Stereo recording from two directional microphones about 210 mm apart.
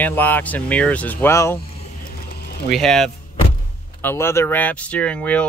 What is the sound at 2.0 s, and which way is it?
Mechanisms, 45° left (ahead or behind).